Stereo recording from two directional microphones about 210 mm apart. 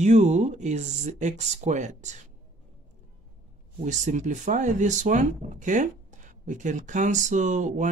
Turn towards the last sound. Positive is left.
turn(degrees=-35)  # may be behind; listen again after turning